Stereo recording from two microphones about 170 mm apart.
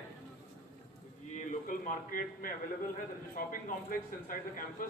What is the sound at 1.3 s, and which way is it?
A man's voice, 50° left (ahead or behind).